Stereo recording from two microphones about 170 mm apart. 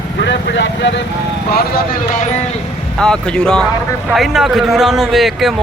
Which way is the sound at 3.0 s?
5° left (ahead or behind).